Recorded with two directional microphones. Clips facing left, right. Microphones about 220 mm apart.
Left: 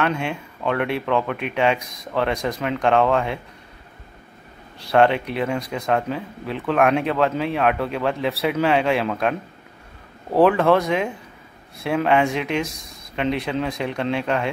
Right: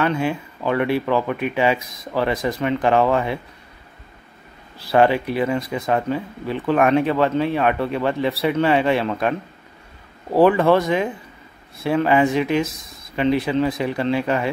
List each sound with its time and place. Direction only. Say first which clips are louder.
0.0 s speech: right 3 dB; centre (ahead or behind)
4.7 s speech: right 1 dB; 5° right (ahead or behind)